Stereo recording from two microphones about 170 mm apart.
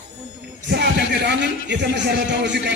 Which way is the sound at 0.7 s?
80° right.